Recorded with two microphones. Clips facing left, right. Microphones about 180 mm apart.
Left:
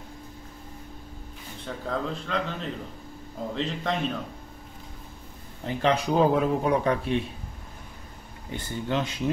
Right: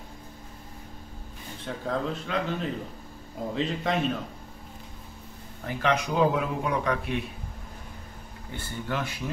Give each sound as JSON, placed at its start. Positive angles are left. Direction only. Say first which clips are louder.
{"t": 1.7, "sound": "speech", "louder": "right 1 dB", "side_deg": 0}
{"t": 5.6, "sound": "a man's voice", "louder": "left 2 dB", "side_deg": 25}
{"t": 8.5, "sound": "speech", "louder": "left 4 dB", "side_deg": 20}